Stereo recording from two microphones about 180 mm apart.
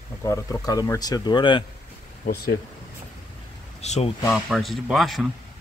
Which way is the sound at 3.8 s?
35° left (ahead or behind).